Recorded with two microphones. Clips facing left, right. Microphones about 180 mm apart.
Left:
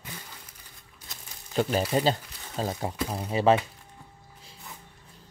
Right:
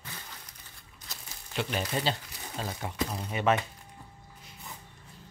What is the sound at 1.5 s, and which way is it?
Speech, 40° left (ahead or behind).